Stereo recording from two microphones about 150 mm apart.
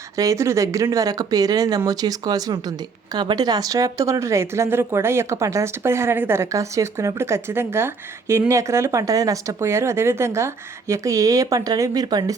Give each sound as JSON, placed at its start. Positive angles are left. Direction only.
{"t": 0.2, "sound": "speech", "side_deg": -20}